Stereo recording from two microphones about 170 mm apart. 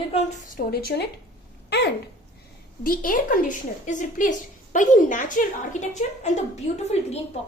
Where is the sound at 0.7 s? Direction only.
65° left (ahead or behind).